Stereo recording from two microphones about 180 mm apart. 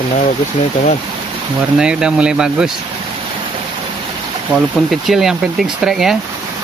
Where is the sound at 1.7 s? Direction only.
5° right (ahead or behind).